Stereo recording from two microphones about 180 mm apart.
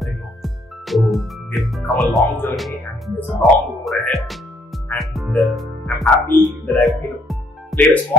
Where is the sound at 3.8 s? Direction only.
Centre (ahead or behind).